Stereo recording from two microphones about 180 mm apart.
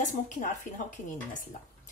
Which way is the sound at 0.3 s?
45° left (ahead or behind).